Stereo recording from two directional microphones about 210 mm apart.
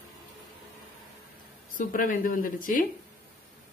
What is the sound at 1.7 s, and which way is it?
Speech, 40° left (ahead or behind).